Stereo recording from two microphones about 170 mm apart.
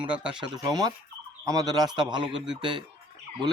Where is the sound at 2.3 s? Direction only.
5° right (ahead or behind).